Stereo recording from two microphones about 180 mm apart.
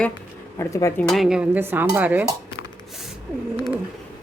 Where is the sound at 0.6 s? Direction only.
15° left (ahead or behind).